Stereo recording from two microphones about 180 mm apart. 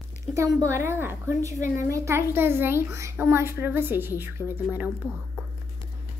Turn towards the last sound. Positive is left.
turn(degrees=-10)  # may be behind; listen again after turning